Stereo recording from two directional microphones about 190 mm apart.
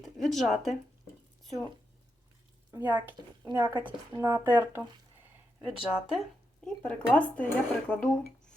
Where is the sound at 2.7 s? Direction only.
10° right (ahead or behind).